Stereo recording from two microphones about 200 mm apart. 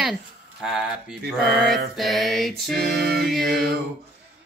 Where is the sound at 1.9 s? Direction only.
Centre (ahead or behind).